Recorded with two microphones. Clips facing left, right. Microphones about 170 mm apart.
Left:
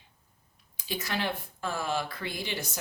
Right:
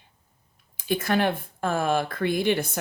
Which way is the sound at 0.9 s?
55° right (ahead or behind).